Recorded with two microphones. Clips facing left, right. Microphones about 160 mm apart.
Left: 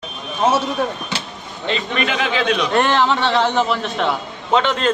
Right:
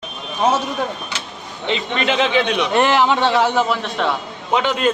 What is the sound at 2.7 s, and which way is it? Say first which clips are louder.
A man's voice: right 2 dB; 10° right (ahead or behind).